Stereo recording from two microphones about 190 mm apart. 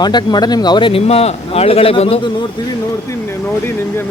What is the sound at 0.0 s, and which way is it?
Speech, 20° left (ahead or behind).